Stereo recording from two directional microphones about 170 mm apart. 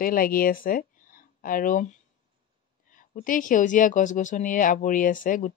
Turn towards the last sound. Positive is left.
turn(degrees=50)  # may be behind; listen again after turning